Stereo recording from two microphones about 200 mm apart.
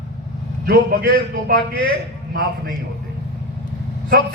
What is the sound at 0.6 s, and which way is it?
Speech, 50° right (ahead or behind).